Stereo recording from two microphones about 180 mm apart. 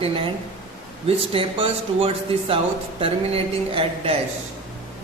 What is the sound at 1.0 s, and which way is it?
Speech, 30° right (ahead or behind).